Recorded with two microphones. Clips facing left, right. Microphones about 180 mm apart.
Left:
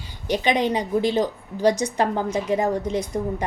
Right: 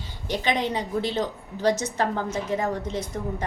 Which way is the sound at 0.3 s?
15° left (ahead or behind).